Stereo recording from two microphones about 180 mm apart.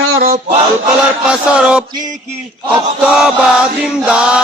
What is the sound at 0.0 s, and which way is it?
Male singing, 55° right (ahead or behind).